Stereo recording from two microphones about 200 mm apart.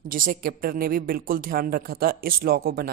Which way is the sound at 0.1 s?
45° right (ahead or behind).